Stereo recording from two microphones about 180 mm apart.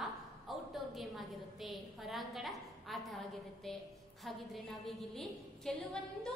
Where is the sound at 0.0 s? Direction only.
Centre (ahead or behind).